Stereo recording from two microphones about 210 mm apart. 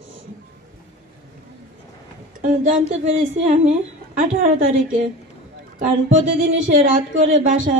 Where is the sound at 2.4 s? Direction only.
40° right (ahead or behind).